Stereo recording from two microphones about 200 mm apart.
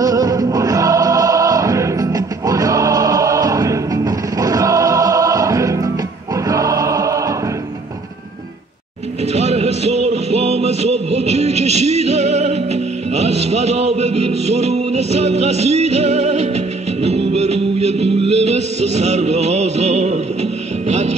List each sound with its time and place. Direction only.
0.0 s music: 20° right (ahead or behind)
6.3 s choir: 15° right (ahead or behind)
9.2 s music: 30° right (ahead or behind)